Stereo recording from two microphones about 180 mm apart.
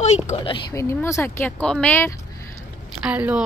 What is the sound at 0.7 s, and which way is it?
Speech, 15° left (ahead or behind).